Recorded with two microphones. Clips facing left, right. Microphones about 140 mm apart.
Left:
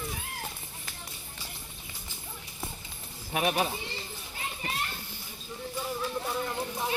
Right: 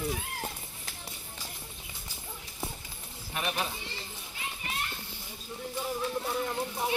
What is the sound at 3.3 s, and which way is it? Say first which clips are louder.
Speech: left 6 dB; 55° left (ahead or behind).